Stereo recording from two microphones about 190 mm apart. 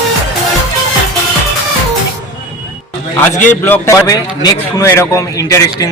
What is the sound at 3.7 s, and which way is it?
A man's voice, 15° left (ahead or behind).